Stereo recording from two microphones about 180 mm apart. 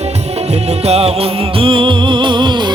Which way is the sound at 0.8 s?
35° right (ahead or behind).